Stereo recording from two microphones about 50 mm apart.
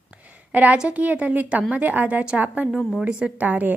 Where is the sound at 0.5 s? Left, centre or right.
Right.